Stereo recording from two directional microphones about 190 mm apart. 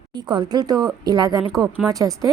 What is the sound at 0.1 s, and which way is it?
A woman's voice, 25° right (ahead or behind).